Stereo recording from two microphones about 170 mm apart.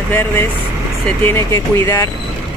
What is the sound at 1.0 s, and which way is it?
Speech, 15° left (ahead or behind).